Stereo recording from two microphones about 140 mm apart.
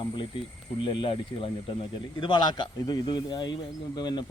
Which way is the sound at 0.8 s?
35° left (ahead or behind).